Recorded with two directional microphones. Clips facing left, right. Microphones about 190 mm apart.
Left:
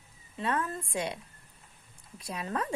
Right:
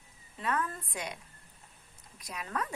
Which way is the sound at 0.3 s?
25° left (ahead or behind).